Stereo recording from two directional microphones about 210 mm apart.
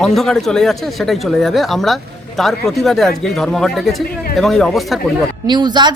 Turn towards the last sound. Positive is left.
turn(degrees=-20)  # may be behind; listen again after turning